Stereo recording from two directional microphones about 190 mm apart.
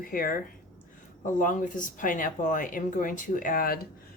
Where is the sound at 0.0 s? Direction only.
50° left (ahead or behind).